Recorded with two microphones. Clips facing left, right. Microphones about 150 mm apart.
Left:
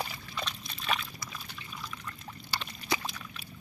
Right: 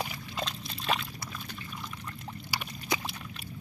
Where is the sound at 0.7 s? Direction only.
30° right (ahead or behind).